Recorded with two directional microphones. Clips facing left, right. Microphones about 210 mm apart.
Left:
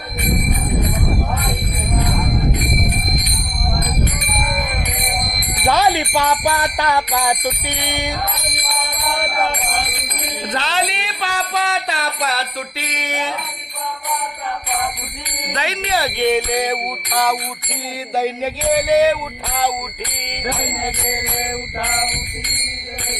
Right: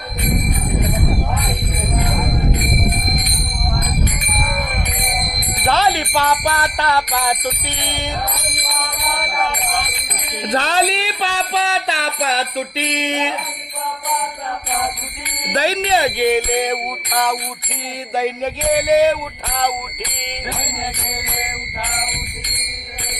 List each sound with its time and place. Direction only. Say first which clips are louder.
5.6 s music: left 1 dB; 10° left (ahead or behind)
10.5 s music: right 5 dB; 40° right (ahead or behind); by 13.3 s 25° right (ahead or behind)
15.5 s speech: right 5 dB; 35° right (ahead or behind)
16.1 s jingle bell: right 1 dB; 5° right (ahead or behind)